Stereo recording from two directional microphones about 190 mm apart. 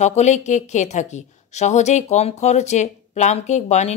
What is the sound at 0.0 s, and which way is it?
Speech, 35° left (ahead or behind).